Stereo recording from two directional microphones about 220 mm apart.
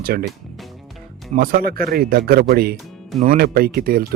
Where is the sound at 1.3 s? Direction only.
40° right (ahead or behind).